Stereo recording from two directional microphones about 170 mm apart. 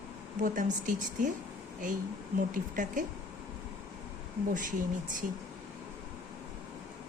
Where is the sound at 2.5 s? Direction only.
50° right (ahead or behind).